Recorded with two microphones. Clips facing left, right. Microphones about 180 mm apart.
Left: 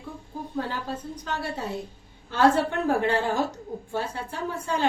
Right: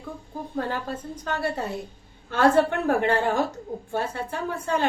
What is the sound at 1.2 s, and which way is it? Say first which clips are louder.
A woman's voice: right 6 dB; 55° right (ahead or behind).